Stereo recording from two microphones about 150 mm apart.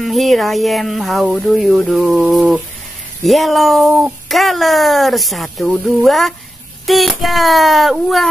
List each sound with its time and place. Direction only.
0.0 s speech: centre (ahead or behind)